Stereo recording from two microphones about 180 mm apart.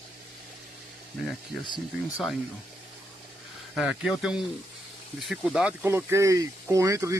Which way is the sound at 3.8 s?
Centre (ahead or behind).